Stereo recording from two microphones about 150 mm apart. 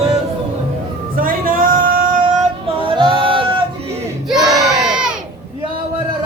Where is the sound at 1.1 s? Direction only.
70° right (ahead or behind).